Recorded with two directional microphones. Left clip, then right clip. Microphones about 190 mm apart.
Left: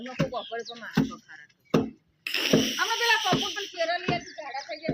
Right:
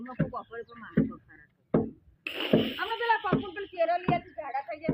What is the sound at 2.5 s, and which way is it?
Speech, 90° left.